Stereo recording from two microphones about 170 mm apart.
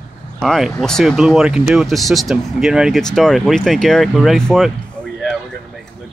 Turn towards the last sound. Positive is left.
turn(degrees=0)  # may be behind; listen again after turning